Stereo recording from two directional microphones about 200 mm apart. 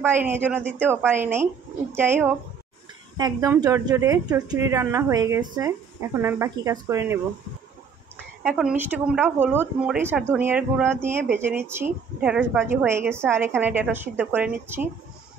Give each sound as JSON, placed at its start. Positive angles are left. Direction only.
{"t": 0.0, "sound": "a woman's voice", "side_deg": -10}
{"t": 8.5, "sound": "a woman's voice", "side_deg": -5}